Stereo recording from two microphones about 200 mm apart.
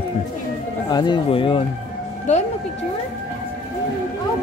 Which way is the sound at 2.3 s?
35° left (ahead or behind).